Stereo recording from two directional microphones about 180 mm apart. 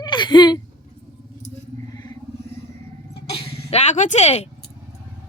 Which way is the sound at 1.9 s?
20° left (ahead or behind).